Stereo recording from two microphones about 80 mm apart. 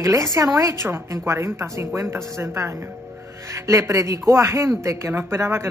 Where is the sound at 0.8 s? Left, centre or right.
Right.